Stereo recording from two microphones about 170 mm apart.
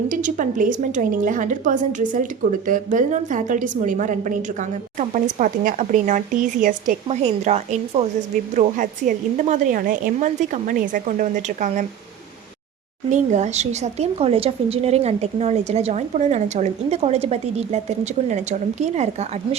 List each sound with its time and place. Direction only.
0.1 s a woman's voice: 50° right (ahead or behind)
13.1 s speech: 45° right (ahead or behind)